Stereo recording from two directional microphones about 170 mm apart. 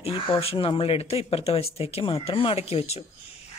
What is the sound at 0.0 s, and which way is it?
Speech, 35° left (ahead or behind).